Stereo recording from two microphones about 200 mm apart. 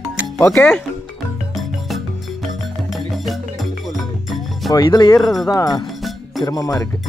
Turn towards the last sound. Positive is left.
turn(degrees=20)  # may be behind; listen again after turning